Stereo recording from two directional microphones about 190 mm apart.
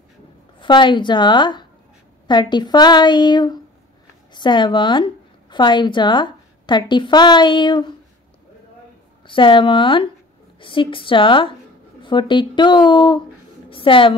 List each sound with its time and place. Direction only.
0.6 s a woman's voice: 25° left (ahead or behind)
9.2 s a woman's voice: 25° left (ahead or behind)